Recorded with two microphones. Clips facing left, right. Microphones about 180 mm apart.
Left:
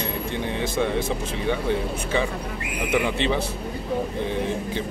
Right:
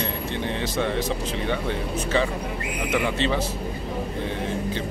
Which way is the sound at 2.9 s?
15° left (ahead or behind).